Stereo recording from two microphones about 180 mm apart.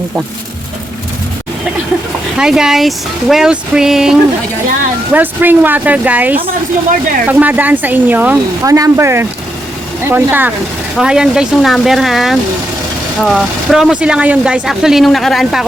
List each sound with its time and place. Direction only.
2.4 s speech: 5° right (ahead or behind)